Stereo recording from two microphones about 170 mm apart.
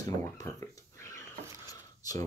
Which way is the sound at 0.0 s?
20° left (ahead or behind).